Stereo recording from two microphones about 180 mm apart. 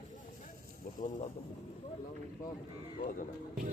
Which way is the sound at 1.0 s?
45° left (ahead or behind).